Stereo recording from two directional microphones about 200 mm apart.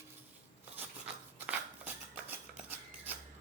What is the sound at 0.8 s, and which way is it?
Scissors, 10° right (ahead or behind).